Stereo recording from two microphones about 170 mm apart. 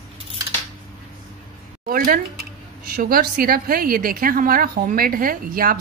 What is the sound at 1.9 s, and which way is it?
A woman's voice, 55° right (ahead or behind).